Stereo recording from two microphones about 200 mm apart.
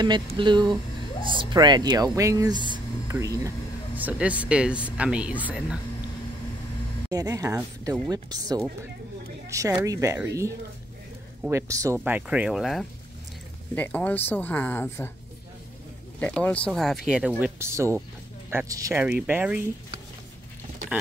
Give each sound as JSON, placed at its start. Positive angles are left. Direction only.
{"t": 0.0, "sound": "speech", "side_deg": -25}
{"t": 7.1, "sound": "speech", "side_deg": -15}
{"t": 16.2, "sound": "speech", "side_deg": 5}
{"t": 17.4, "sound": "speech", "side_deg": -15}